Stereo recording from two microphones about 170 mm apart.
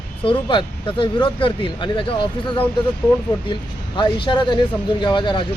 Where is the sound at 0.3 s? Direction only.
30° left (ahead or behind).